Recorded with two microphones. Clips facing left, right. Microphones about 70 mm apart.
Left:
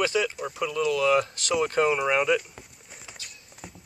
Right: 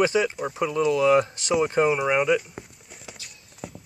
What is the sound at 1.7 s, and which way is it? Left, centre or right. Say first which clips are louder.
Speech: right 1 dB; centre.